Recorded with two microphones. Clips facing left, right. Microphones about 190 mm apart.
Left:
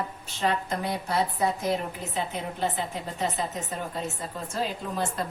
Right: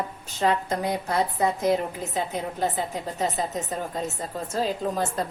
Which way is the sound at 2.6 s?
40° right (ahead or behind).